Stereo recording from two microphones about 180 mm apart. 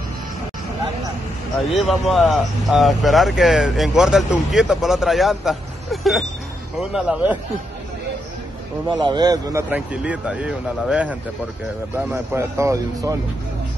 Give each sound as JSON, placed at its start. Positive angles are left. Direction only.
{"t": 1.7, "sound": "speech", "side_deg": 0}
{"t": 8.8, "sound": "speech", "side_deg": -25}